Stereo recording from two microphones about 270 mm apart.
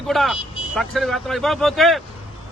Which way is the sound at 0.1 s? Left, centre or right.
Centre.